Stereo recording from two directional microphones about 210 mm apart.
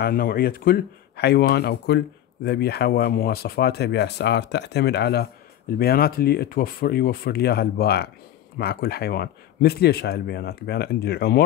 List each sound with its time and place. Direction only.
0.0 s speech: 45° left (ahead or behind)